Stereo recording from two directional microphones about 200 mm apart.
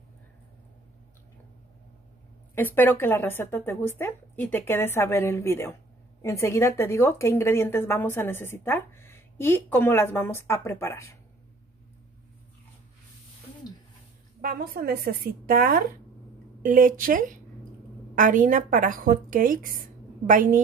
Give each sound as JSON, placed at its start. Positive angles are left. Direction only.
{"t": 2.5, "sound": "a woman's voice", "side_deg": 10}
{"t": 14.4, "sound": "a woman's voice", "side_deg": -45}